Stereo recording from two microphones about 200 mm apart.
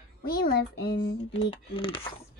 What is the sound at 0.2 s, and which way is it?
Speech, 50° left (ahead or behind).